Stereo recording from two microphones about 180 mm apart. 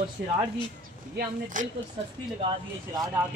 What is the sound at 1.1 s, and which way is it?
Speech, 45° right (ahead or behind).